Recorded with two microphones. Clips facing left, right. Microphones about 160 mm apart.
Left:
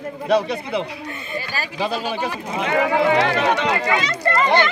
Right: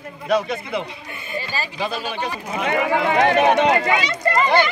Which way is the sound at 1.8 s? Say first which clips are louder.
Left 4 dB; 5° left (ahead or behind).